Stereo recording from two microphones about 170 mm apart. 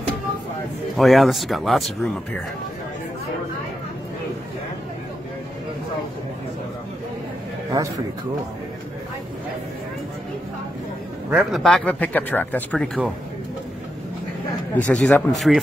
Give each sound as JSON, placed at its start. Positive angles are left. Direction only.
{"t": 0.9, "sound": "speech", "side_deg": 0}
{"t": 7.8, "sound": "speech", "side_deg": -20}
{"t": 11.2, "sound": "speech", "side_deg": 0}
{"t": 14.9, "sound": "speech", "side_deg": 5}